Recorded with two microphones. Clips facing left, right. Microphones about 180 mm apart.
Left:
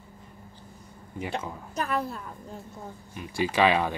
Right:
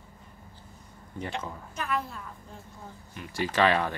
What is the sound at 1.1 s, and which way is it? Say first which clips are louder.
Speech: left 2 dB; 10° left (ahead or behind).